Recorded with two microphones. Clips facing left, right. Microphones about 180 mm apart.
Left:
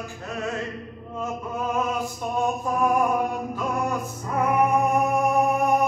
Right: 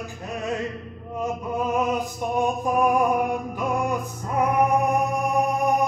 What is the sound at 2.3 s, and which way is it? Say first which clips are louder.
Music: right 2 dB; 15° right (ahead or behind).